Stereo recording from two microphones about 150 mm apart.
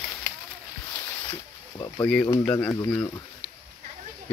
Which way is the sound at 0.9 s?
15° left (ahead or behind).